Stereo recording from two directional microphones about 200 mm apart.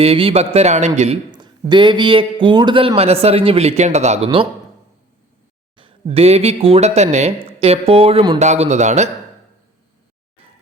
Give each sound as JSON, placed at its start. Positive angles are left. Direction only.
{"t": 0.0, "sound": "speech", "side_deg": -30}
{"t": 1.3, "sound": "a man's voice", "side_deg": -20}
{"t": 5.7, "sound": "speech", "side_deg": -25}